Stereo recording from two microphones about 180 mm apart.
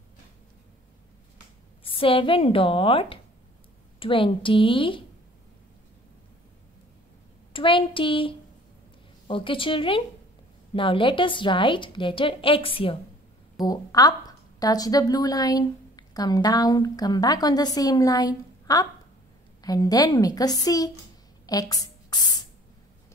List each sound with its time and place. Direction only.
2.0 s a woman's voice: 30° left (ahead or behind)
7.5 s a woman's voice: 30° left (ahead or behind)
21.5 s a sound: 20° left (ahead or behind)